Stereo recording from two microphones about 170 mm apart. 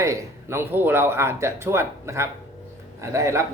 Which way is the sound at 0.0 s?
15° right (ahead or behind).